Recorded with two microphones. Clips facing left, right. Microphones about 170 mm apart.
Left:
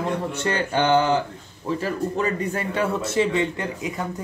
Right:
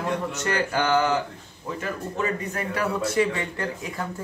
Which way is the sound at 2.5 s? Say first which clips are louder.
Left 3 dB; 25° left (ahead or behind).